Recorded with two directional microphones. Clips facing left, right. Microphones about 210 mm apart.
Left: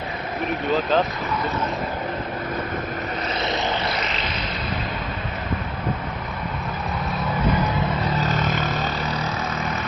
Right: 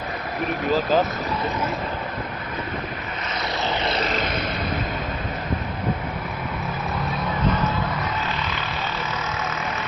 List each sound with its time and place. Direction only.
0.7 s speech: centre (ahead or behind)
4.1 s vehicle: 50° right (ahead or behind)
8.2 s vehicle: 45° left (ahead or behind)